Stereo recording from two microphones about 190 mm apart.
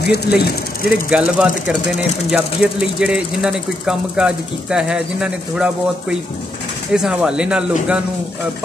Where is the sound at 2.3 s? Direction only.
5° right (ahead or behind).